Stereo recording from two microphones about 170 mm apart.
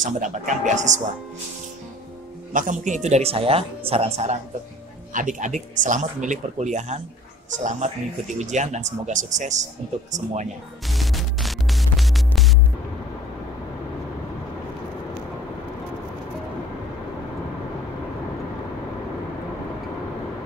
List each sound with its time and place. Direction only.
0.0 s speech: 45° right (ahead or behind)
2.5 s speech: 50° right (ahead or behind)
10.9 s music: centre (ahead or behind)